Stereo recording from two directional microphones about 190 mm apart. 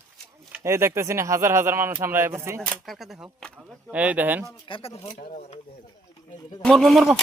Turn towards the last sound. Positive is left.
turn(degrees=0)  # may be behind; listen again after turning